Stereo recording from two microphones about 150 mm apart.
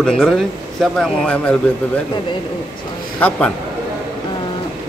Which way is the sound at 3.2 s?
10° left (ahead or behind).